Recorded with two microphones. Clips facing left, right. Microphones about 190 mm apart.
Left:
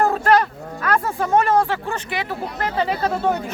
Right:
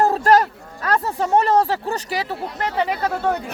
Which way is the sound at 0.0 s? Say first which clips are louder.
Right 1 dB; 35° right (ahead or behind).